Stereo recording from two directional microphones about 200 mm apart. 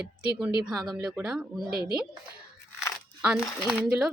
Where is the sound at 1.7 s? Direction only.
50° right (ahead or behind).